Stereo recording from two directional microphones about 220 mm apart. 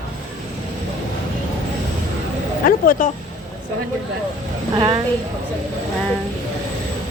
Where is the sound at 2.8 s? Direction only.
35° left (ahead or behind).